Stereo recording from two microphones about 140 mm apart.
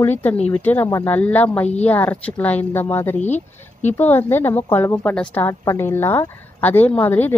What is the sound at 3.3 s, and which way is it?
Speech, 55° left (ahead or behind).